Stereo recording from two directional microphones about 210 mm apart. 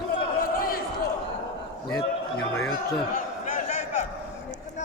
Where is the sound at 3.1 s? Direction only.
35° left (ahead or behind).